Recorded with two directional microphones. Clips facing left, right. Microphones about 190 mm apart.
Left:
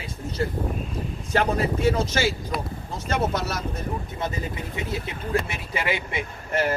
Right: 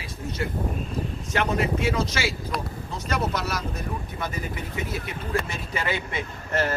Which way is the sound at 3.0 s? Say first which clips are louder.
Left 2 dB; 25° left (ahead or behind).